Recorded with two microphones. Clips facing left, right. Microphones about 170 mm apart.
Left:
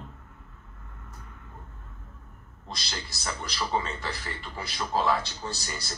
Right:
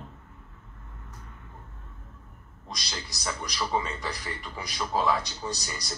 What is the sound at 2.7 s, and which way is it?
A man's voice, 15° right (ahead or behind).